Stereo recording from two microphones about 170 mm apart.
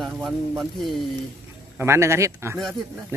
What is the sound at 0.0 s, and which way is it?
Speech, centre (ahead or behind).